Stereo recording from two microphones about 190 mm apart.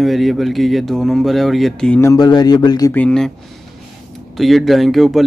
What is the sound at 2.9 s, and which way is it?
Speech, 5° left (ahead or behind).